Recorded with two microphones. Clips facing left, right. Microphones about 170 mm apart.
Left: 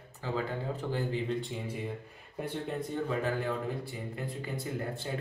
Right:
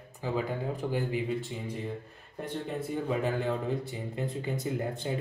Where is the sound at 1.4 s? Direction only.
Centre (ahead or behind).